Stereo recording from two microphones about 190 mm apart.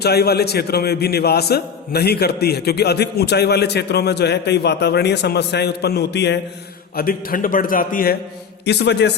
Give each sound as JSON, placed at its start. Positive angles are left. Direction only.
{"t": 0.0, "sound": "a man's voice", "side_deg": 55}
{"t": 6.9, "sound": "a man's voice", "side_deg": 50}
{"t": 8.6, "sound": "a man's voice", "side_deg": 65}